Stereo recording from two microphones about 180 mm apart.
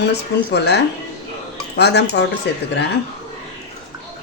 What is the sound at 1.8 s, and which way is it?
Speech, 70° left (ahead or behind).